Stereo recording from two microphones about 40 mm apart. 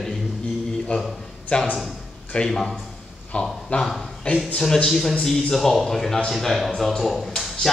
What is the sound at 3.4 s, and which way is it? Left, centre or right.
Speech, centre.